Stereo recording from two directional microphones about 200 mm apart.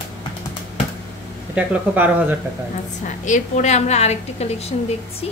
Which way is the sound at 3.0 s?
40° left (ahead or behind).